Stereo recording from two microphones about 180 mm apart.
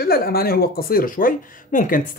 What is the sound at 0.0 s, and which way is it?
Speech, 60° left (ahead or behind).